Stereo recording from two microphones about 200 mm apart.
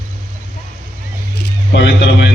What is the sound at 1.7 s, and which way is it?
Speech, 60° left (ahead or behind).